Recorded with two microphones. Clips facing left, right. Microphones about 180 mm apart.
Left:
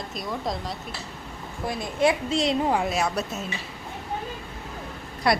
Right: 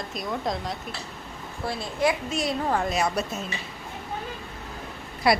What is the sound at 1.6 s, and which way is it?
A woman's voice, 20° left (ahead or behind).